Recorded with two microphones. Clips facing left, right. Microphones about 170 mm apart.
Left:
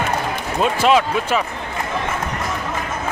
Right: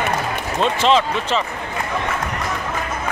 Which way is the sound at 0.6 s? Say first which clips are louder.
Left 1 dB; 10° left (ahead or behind).